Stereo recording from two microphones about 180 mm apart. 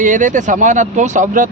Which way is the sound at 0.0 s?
45° right (ahead or behind).